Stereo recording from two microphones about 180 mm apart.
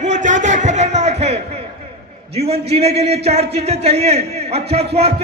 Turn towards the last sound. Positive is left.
turn(degrees=-35)  # may be behind; listen again after turning